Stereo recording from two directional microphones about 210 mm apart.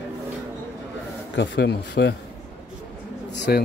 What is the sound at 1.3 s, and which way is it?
Speech, 55° left (ahead or behind).